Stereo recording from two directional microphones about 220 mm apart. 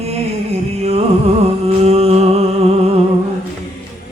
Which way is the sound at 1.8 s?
30° right (ahead or behind).